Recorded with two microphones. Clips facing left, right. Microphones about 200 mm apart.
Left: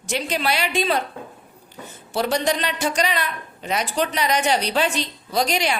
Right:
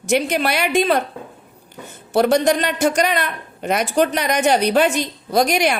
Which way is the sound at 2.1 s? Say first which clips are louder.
Right 7 dB; 50° right (ahead or behind).